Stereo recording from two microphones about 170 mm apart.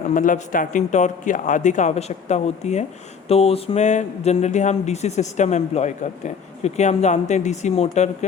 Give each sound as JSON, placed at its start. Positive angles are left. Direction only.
{"t": 0.1, "sound": "speech", "side_deg": 50}